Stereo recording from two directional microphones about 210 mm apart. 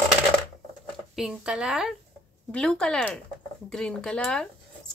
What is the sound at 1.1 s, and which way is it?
Speech, 5° right (ahead or behind).